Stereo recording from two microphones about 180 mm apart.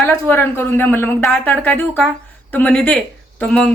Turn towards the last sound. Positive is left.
turn(degrees=5)  # may be behind; listen again after turning